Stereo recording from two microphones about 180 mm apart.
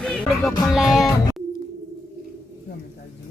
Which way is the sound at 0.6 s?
Centre (ahead or behind).